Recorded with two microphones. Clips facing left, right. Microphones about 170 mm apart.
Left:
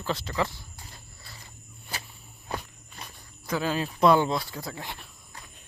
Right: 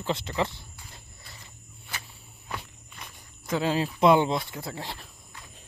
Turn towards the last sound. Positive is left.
turn(degrees=-30)  # may be behind; listen again after turning